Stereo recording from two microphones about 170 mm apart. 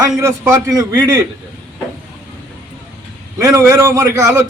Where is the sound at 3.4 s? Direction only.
15° right (ahead or behind).